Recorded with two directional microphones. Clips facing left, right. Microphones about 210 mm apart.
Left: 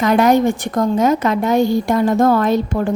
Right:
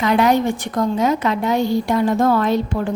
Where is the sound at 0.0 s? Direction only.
45° left (ahead or behind).